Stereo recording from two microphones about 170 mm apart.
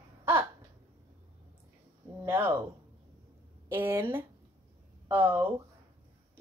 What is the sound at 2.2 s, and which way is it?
Speech, 15° right (ahead or behind).